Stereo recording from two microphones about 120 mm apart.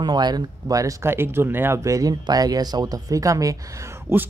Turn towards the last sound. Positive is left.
turn(degrees=-20)  # may be behind; listen again after turning